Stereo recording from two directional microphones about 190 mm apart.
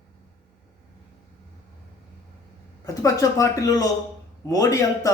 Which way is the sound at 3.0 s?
15° left (ahead or behind).